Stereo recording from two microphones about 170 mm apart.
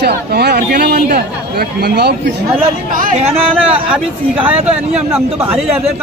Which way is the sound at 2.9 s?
50° right (ahead or behind).